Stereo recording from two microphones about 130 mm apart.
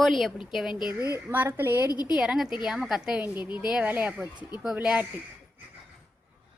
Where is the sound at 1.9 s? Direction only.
30° left (ahead or behind).